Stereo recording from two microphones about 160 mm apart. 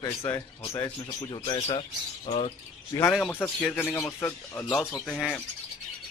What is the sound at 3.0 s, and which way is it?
Speech, centre (ahead or behind).